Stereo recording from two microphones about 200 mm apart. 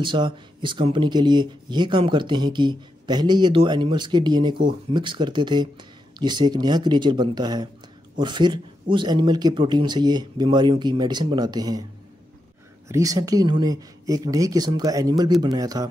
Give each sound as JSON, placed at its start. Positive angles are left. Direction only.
{"t": 0.0, "sound": "speech", "side_deg": -25}
{"t": 12.8, "sound": "speech", "side_deg": -15}